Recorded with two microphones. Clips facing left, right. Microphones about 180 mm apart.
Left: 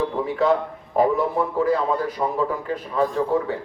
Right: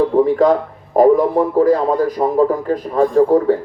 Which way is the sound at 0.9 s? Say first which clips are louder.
Right 8 dB; 40° right (ahead or behind).